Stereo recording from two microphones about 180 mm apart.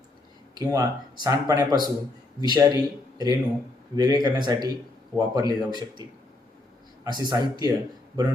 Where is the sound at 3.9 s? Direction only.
20° right (ahead or behind).